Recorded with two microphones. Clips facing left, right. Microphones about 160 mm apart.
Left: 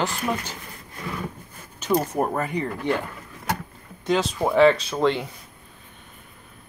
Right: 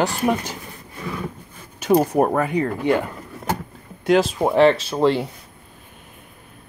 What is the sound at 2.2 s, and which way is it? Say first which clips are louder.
Speech: right 6 dB; 60° right (ahead or behind).